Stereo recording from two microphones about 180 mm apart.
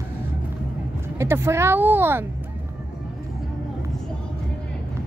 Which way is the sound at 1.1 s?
15° right (ahead or behind).